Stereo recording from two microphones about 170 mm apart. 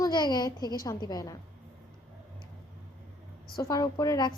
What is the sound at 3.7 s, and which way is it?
Speech, 20° left (ahead or behind).